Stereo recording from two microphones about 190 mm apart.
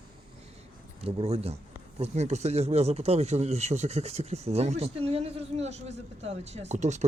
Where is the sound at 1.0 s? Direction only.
30° right (ahead or behind).